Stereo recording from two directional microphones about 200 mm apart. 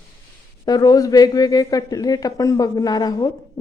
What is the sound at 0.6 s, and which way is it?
A man's voice, 20° left (ahead or behind).